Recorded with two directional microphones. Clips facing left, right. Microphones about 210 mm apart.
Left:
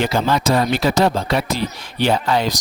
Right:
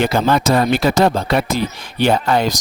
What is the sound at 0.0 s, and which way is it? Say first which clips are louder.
Speech: right 3 dB; 55° right (ahead or behind).